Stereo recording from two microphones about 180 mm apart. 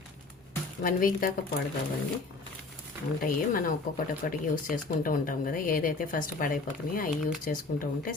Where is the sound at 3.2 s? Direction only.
50° left (ahead or behind).